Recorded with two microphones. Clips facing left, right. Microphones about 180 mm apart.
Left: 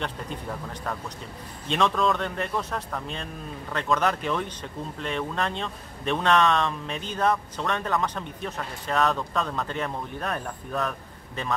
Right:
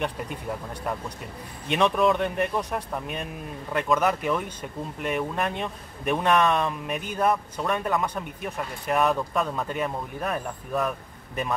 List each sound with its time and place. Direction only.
1.7 s speech: 15° right (ahead or behind)